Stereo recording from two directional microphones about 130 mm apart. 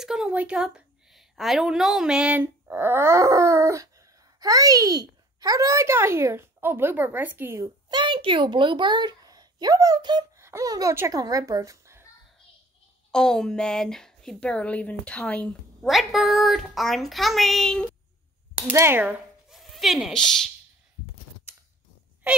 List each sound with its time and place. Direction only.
0.0 s a woman's voice: 5° right (ahead or behind)
7.6 s a child's voice: 35° right (ahead or behind)
13.1 s a woman's voice: 5° left (ahead or behind)
18.7 s a woman's voice: 15° right (ahead or behind)
19.5 s speech: centre (ahead or behind)